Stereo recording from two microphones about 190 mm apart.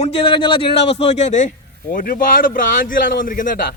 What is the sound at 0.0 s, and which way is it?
A man's voice, 30° left (ahead or behind).